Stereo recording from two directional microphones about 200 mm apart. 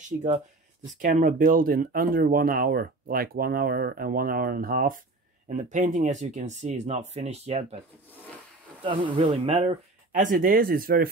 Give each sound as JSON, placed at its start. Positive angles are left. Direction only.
{"t": 0.0, "sound": "speech", "side_deg": -35}
{"t": 8.8, "sound": "speech", "side_deg": -25}
{"t": 10.2, "sound": "speech", "side_deg": -45}